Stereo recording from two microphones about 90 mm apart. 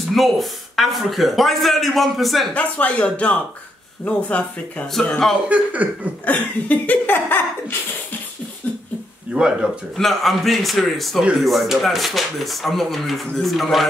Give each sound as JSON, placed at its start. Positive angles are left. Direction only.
{"t": 0.1, "sound": "speech", "side_deg": 0}
{"t": 2.5, "sound": "speech", "side_deg": 15}
{"t": 5.5, "sound": "speech", "side_deg": -15}
{"t": 6.2, "sound": "speech", "side_deg": 20}
{"t": 9.3, "sound": "speech", "side_deg": -10}
{"t": 9.9, "sound": "speech", "side_deg": 0}